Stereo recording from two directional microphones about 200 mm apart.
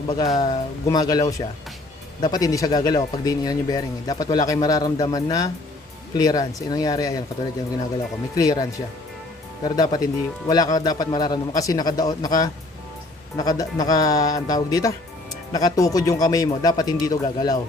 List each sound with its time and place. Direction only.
0.1 s speech: 20° left (ahead or behind)
8.4 s speech: 20° left (ahead or behind)
9.6 s a man's voice: 20° left (ahead or behind)